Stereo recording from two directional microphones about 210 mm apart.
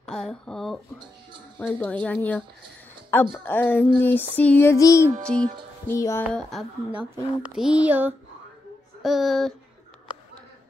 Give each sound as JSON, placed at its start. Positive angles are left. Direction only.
{"t": 0.0, "sound": "a woman's voice", "side_deg": 0}
{"t": 5.2, "sound": "music", "side_deg": 5}
{"t": 5.9, "sound": "speech", "side_deg": 15}
{"t": 6.2, "sound": "a woman's voice", "side_deg": 0}
{"t": 7.4, "sound": "a sound", "side_deg": -5}
{"t": 9.0, "sound": "a woman's voice", "side_deg": 0}